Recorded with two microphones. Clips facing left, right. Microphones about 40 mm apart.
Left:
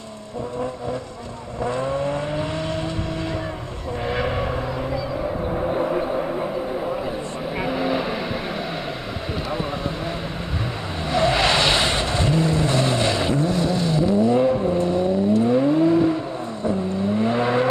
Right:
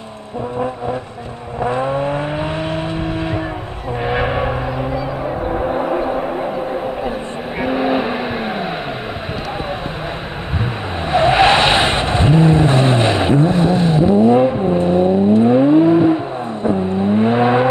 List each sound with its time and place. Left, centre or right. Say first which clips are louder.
1.6 s vehicle: right 5 dB; right
7.6 s vehicle: right 7 dB; right
11.1 s vehicle: right 7 dB; right